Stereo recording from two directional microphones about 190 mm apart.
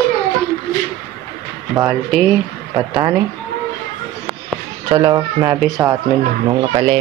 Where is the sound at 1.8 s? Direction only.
Centre (ahead or behind).